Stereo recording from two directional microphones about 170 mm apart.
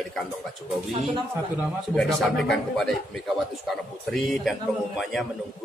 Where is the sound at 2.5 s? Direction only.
Centre (ahead or behind).